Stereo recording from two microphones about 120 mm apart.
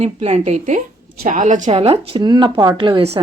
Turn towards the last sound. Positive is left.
turn(degrees=-40)  # may be behind; listen again after turning